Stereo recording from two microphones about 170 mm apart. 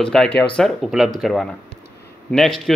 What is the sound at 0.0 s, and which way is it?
A man's voice, 5° left (ahead or behind).